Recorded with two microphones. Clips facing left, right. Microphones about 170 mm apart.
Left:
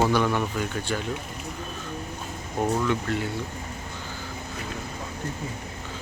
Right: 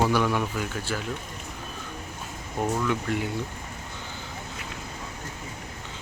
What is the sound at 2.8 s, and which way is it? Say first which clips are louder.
Speech: left 1 dB; 15° right (ahead or behind).